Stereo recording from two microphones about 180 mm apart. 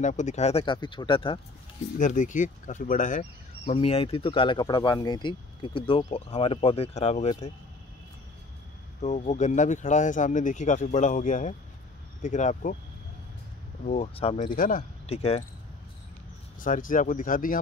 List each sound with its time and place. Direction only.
0.0 s speech: 40° left (ahead or behind)
2.0 s speech: 45° left (ahead or behind)
9.0 s speech: 40° left (ahead or behind)
13.8 s speech: 35° left (ahead or behind)
14.5 s speech: 50° left (ahead or behind)
15.0 s speech: 35° left (ahead or behind)
16.5 s speech: 45° left (ahead or behind)